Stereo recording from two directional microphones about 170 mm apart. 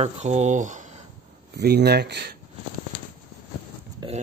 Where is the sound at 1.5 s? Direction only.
75° right (ahead or behind).